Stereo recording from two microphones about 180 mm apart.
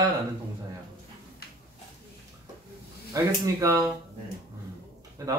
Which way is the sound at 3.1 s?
20° right (ahead or behind).